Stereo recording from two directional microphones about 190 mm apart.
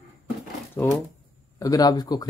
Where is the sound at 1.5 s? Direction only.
20° left (ahead or behind).